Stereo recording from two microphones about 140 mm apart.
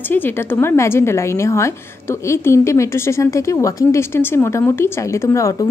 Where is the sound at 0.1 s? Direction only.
15° left (ahead or behind).